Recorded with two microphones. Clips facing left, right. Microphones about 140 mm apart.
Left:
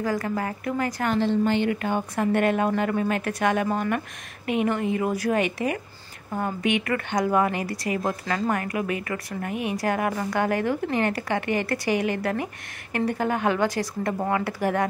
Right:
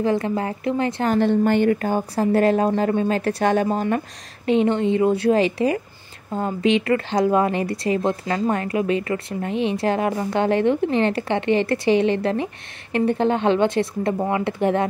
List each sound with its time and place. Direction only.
0.0 s a woman's voice: 25° right (ahead or behind)
1.1 s a woman's voice: 55° right (ahead or behind); by 14.9 s 25° right (ahead or behind)